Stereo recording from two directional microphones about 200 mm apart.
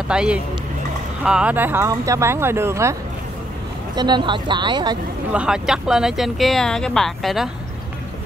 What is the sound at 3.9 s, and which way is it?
Speech, 20° right (ahead or behind).